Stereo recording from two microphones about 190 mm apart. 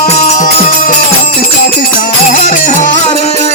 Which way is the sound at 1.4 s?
50° left (ahead or behind).